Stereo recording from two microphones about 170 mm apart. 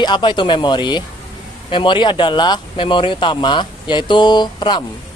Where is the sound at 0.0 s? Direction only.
25° left (ahead or behind).